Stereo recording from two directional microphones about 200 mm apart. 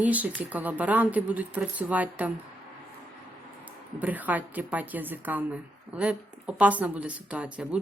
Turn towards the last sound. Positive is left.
turn(degrees=-5)  # may be behind; listen again after turning